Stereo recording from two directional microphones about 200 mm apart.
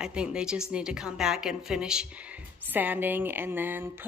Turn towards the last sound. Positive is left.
turn(degrees=-10)  # may be behind; listen again after turning